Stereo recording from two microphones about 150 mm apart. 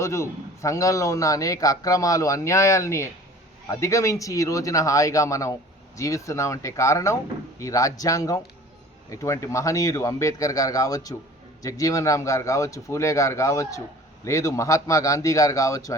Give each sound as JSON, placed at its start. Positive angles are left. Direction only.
{"t": 0.0, "sound": "a man's voice", "side_deg": 20}